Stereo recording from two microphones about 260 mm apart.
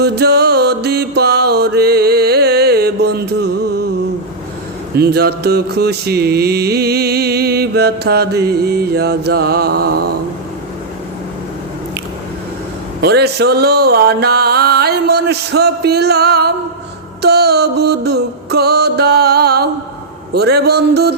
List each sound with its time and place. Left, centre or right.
0.0 s music: right
4.9 s music: right
13.0 s music: right